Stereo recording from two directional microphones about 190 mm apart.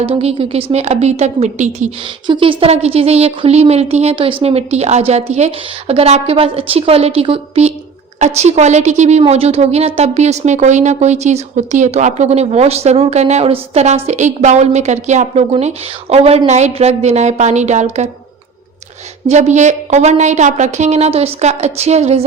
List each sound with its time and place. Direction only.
0.0 s a woman's voice: 30° right (ahead or behind)
2.2 s a woman's voice: 25° right (ahead or behind)
19.3 s a woman's voice: 35° right (ahead or behind)